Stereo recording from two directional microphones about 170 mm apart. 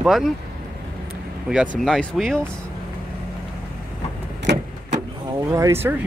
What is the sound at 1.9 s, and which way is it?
Speech, centre (ahead or behind).